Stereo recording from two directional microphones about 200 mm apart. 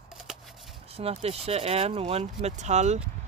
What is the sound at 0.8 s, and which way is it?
Speech, 30° right (ahead or behind).